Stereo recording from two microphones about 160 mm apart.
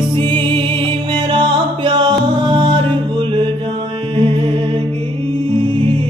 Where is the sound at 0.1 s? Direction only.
30° right (ahead or behind).